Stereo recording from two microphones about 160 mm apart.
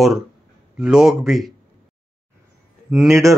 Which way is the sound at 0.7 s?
5° right (ahead or behind).